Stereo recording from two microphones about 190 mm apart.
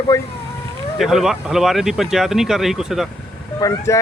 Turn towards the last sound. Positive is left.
turn(degrees=15)  # may be behind; listen again after turning